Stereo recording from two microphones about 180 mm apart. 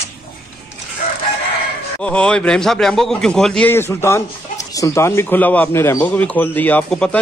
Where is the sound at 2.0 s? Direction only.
5° left (ahead or behind).